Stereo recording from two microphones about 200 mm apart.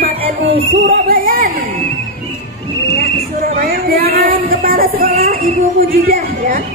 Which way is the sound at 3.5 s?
50° right (ahead or behind).